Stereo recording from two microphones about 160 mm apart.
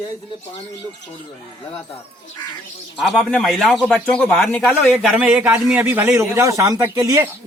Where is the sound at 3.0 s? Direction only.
Centre (ahead or behind).